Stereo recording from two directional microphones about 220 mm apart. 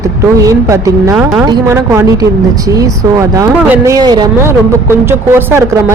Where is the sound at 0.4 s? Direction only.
15° right (ahead or behind).